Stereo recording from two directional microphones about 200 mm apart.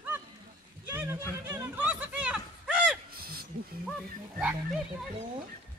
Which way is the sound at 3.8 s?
Centre (ahead or behind).